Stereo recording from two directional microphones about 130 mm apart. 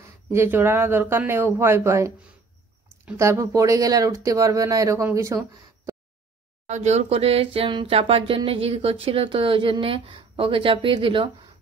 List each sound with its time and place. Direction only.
0.0 s speech: 20° right (ahead or behind)
3.2 s speech: 20° right (ahead or behind)
5.9 s a sound: 20° right (ahead or behind)
6.7 s speech: 60° right (ahead or behind); by 11.2 s 40° right (ahead or behind)